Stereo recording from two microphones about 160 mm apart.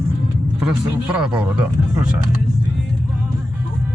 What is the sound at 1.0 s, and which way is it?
Speech, 5° right (ahead or behind).